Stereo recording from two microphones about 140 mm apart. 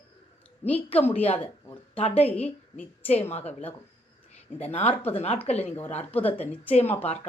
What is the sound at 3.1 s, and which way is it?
Speech, 45° left (ahead or behind).